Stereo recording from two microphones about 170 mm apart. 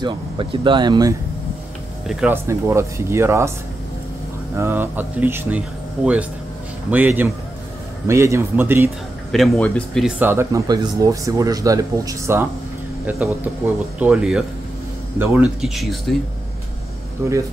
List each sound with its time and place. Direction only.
0.0 s speech: 30° right (ahead or behind)
2.0 s speech: 5° right (ahead or behind)
4.6 s speech: 10° right (ahead or behind)
6.9 s speech: 10° right (ahead or behind)
9.3 s speech: centre (ahead or behind)
10.0 s speech: 10° right (ahead or behind)
15.6 s speech: centre (ahead or behind)
17.2 s speech: 15° right (ahead or behind)